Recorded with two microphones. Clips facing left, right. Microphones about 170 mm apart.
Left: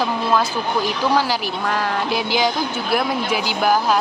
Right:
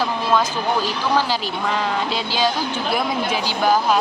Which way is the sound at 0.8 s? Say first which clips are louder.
Left 2 dB; 10° left (ahead or behind).